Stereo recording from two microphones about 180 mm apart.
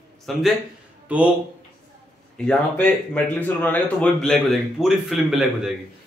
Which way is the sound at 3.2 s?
10° left (ahead or behind).